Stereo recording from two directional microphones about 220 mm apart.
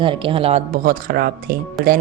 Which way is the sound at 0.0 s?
25° right (ahead or behind).